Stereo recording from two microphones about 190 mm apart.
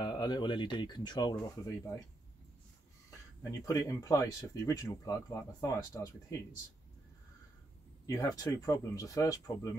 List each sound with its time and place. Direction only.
0.0 s speech: 20° left (ahead or behind)
3.6 s speech: 20° left (ahead or behind)
8.1 s speech: 20° left (ahead or behind)